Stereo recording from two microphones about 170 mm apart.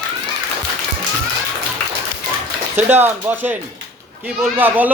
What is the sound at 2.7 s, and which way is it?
A man's voice, 10° right (ahead or behind).